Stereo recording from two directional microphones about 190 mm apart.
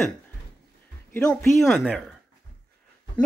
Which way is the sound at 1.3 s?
10° left (ahead or behind).